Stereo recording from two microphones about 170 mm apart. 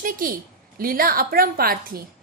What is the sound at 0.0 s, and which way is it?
A woman's voice, 55° right (ahead or behind).